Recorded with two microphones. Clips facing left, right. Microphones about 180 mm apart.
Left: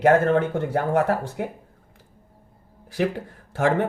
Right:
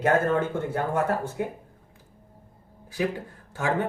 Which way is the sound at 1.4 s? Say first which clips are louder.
Left 1 dB; 70° left (ahead or behind).